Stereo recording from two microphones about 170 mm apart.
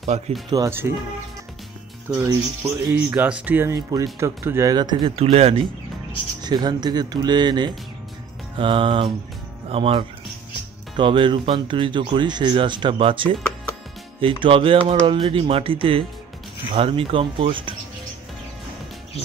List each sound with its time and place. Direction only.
0.1 s speech: 40° right (ahead or behind)
0.5 s speech: 15° right (ahead or behind)
2.0 s speech: 15° right (ahead or behind); by 5.7 s 35° right (ahead or behind)
6.4 s speech: 25° right (ahead or behind)